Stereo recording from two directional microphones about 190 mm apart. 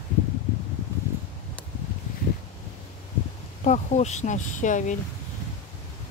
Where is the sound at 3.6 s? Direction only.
40° left (ahead or behind).